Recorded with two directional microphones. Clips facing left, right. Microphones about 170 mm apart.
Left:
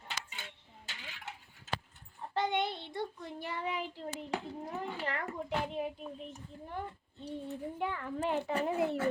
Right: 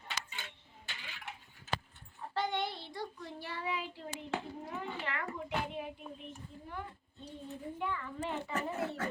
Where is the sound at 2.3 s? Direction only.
20° left (ahead or behind).